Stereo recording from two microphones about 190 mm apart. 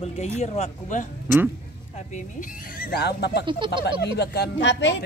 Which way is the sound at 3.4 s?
25° right (ahead or behind).